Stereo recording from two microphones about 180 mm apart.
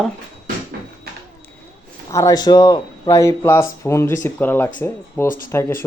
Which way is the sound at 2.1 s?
15° left (ahead or behind).